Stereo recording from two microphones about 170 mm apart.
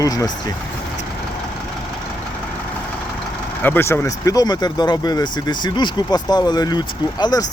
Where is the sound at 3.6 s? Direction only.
15° left (ahead or behind).